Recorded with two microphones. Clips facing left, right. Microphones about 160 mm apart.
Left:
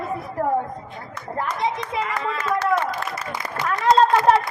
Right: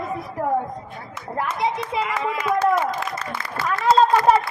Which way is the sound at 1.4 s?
10° right (ahead or behind).